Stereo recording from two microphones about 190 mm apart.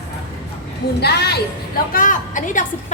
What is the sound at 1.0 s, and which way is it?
Speech, 60° left (ahead or behind).